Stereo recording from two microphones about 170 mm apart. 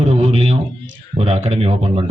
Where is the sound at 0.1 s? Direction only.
35° right (ahead or behind).